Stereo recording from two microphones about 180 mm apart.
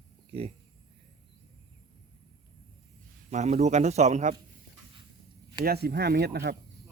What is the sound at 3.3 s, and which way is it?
Speech, 40° right (ahead or behind).